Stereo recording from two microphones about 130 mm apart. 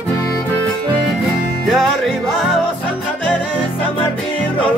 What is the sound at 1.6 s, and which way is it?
Music, centre (ahead or behind).